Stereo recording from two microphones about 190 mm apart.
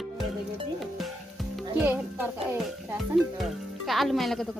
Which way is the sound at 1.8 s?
10° right (ahead or behind).